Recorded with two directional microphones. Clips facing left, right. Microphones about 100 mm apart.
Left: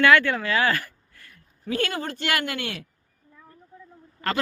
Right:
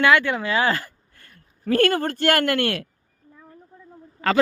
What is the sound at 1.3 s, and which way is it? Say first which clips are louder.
Speech: right 7 dB; 45° right (ahead or behind).